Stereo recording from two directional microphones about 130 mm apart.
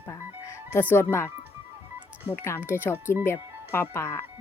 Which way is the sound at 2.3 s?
20° left (ahead or behind).